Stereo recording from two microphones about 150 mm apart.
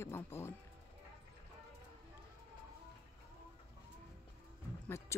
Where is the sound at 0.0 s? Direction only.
15° left (ahead or behind).